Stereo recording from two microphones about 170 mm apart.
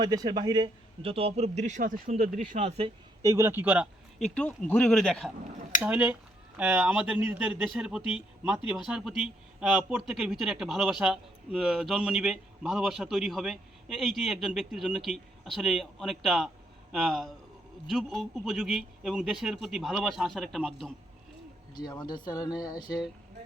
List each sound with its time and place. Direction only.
0.0 s a man's voice: 25° right (ahead or behind); by 2.0 s 50° right (ahead or behind)
2.0 s a man's voice: 35° right (ahead or behind)
2.4 s speech: 50° right (ahead or behind)
3.2 s a man's voice: 20° right (ahead or behind)
4.2 s speech: 5° left (ahead or behind)
5.8 s a man's voice: 5° right (ahead or behind)
21.8 s speech: 25° left (ahead or behind)